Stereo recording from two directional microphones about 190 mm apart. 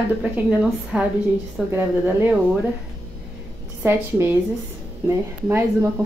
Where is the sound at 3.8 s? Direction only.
10° right (ahead or behind).